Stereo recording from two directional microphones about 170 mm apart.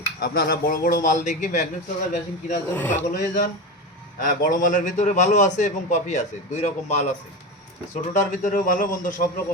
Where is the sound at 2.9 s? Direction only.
50° left (ahead or behind).